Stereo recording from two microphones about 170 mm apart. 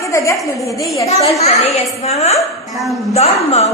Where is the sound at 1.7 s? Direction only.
35° left (ahead or behind).